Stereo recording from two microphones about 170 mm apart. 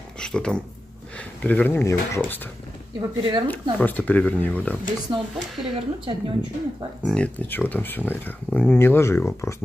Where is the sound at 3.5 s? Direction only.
10° left (ahead or behind).